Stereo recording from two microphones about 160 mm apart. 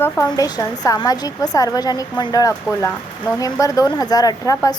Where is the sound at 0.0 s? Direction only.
20° left (ahead or behind).